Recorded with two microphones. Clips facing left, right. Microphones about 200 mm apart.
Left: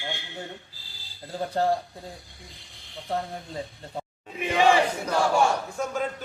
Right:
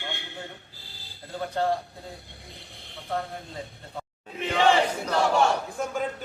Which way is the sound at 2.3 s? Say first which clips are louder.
Right 3 dB; 60° right (ahead or behind).